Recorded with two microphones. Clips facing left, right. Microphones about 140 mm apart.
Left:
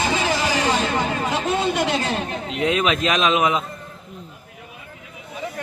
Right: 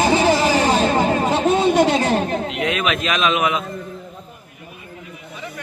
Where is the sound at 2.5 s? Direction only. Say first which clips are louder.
Left 1 dB; 30° left (ahead or behind).